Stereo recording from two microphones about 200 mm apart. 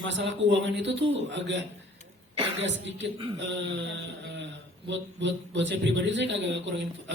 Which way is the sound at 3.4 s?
65° right (ahead or behind).